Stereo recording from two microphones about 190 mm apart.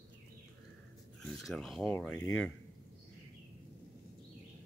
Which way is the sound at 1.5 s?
Centre (ahead or behind).